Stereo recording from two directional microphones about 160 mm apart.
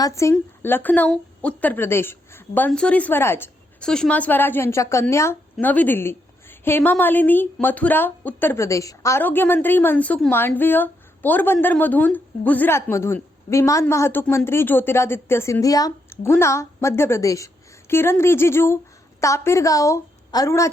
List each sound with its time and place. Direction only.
0.0 s a woman's voice: 20° left (ahead or behind)